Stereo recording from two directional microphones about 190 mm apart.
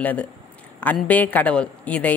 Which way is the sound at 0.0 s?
10° left (ahead or behind).